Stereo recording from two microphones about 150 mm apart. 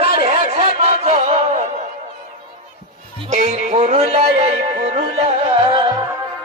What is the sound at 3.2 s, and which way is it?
A man's voice, 50° right (ahead or behind).